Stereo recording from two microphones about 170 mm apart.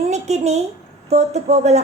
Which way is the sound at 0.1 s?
40° right (ahead or behind).